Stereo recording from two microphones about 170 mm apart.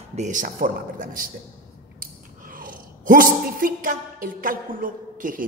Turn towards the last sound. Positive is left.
turn(degrees=-55)  # may be behind; listen again after turning